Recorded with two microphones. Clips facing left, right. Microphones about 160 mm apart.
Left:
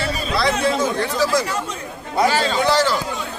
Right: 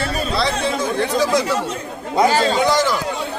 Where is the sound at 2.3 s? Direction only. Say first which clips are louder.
Right 3 dB; 40° right (ahead or behind).